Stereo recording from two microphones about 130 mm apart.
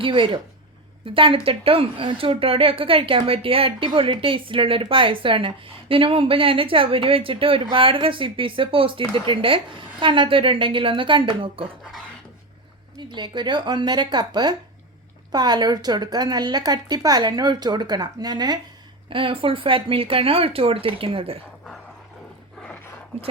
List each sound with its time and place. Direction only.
0.0 s a woman's voice: 40° right (ahead or behind)
13.0 s a woman's voice: 35° right (ahead or behind)
19.1 s a woman's voice: 40° right (ahead or behind)